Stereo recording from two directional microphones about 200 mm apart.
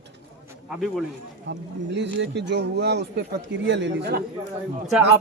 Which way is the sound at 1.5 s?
60° right (ahead or behind).